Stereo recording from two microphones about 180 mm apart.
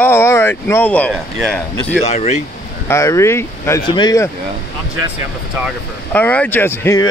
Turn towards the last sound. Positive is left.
turn(degrees=15)  # may be behind; listen again after turning